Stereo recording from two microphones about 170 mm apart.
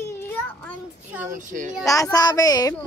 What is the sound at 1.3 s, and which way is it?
Speech, 50° right (ahead or behind).